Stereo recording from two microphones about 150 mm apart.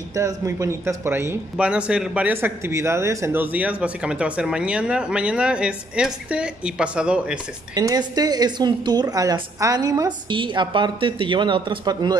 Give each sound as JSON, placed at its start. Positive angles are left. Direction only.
{"t": 0.1, "sound": "a man's voice", "side_deg": -20}
{"t": 7.7, "sound": "a woman's voice", "side_deg": -25}